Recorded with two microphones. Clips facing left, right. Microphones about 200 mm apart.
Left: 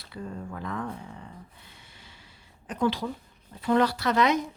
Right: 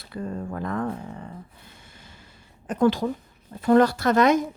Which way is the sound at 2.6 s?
45° right (ahead or behind).